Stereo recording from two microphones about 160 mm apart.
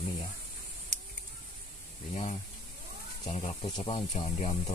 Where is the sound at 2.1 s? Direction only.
40° left (ahead or behind).